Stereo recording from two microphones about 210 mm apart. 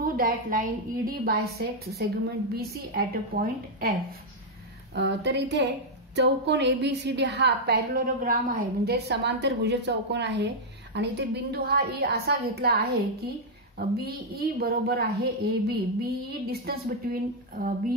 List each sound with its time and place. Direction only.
0.0 s a woman's voice: 40° right (ahead or behind)
4.9 s a woman's voice: 55° right (ahead or behind)
13.7 s a woman's voice: 45° right (ahead or behind)